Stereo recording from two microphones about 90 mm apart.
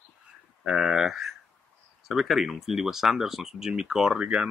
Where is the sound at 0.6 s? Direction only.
5° right (ahead or behind).